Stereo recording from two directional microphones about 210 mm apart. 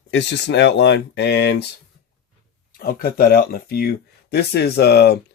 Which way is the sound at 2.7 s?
45° left (ahead or behind).